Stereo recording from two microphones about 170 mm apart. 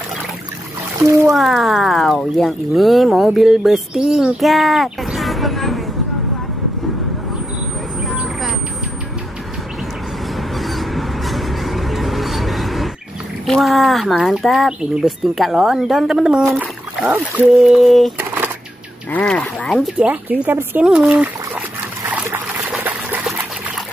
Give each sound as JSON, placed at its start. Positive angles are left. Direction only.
{"t": 1.0, "sound": "speech", "side_deg": -15}
{"t": 1.3, "sound": "speech", "side_deg": 0}
{"t": 10.6, "sound": "a sound", "side_deg": 0}
{"t": 13.5, "sound": "speech", "side_deg": 0}
{"t": 18.1, "sound": "a sound", "side_deg": -10}
{"t": 19.1, "sound": "speech", "side_deg": 10}
{"t": 20.0, "sound": "speech", "side_deg": -10}
{"t": 22.1, "sound": "trickle", "side_deg": -10}